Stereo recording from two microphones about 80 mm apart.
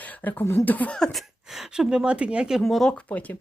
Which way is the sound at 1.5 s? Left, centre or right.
Centre.